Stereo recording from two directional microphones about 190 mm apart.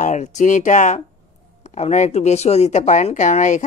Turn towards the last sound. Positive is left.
turn(degrees=40)  # may be behind; listen again after turning